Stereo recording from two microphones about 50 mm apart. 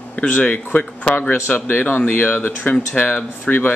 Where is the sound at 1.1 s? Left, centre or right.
Left.